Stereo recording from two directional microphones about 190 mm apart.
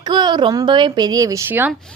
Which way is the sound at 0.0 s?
20° right (ahead or behind).